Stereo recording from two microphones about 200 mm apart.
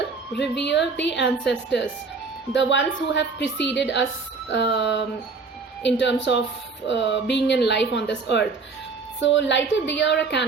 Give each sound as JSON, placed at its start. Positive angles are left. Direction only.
{"t": 0.3, "sound": "a woman's voice", "side_deg": 60}